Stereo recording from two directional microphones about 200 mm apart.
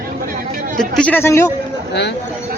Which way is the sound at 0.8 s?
10° left (ahead or behind).